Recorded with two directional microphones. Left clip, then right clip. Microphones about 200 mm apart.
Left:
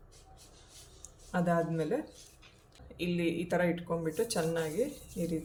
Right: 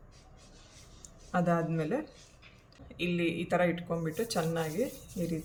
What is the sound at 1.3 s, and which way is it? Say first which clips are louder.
Speech: right 1 dB; centre (ahead or behind).